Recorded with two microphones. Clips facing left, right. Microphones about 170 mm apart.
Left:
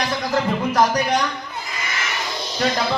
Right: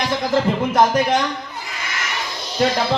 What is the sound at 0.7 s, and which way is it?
Speech, 25° right (ahead or behind).